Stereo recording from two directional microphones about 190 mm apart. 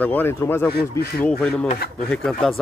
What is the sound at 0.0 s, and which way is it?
Speech, 10° left (ahead or behind).